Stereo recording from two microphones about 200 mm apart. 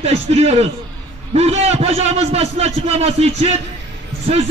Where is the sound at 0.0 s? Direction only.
30° right (ahead or behind).